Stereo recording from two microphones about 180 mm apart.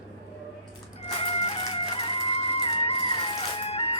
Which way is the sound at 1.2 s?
30° left (ahead or behind).